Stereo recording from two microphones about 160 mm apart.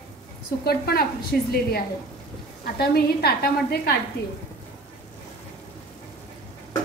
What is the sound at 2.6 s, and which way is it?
Speech, 75° left (ahead or behind).